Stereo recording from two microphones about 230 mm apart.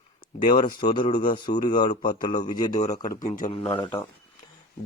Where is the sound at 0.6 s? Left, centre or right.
Centre.